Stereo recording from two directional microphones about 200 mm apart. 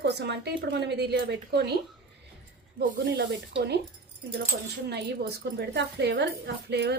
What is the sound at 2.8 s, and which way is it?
Speech, 55° right (ahead or behind).